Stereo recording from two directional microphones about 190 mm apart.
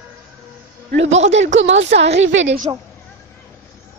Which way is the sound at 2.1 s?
75° right (ahead or behind).